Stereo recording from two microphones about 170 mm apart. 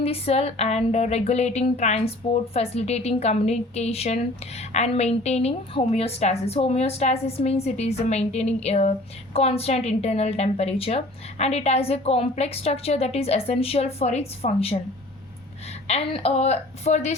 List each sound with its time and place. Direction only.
0.0 s speech: 35° left (ahead or behind)
15.9 s speech: 35° left (ahead or behind)